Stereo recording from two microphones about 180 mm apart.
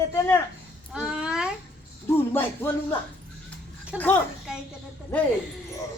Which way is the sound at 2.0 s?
10° left (ahead or behind).